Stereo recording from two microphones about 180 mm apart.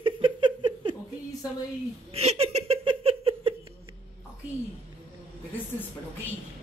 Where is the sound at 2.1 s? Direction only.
35° right (ahead or behind).